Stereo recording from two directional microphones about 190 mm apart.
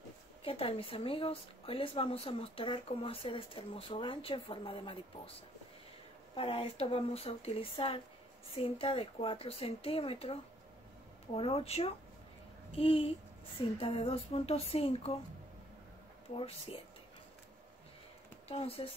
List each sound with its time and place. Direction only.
0.4 s speech: 30° left (ahead or behind)
6.3 s speech: 30° left (ahead or behind)
16.3 s speech: 30° left (ahead or behind)
18.5 s speech: 30° left (ahead or behind)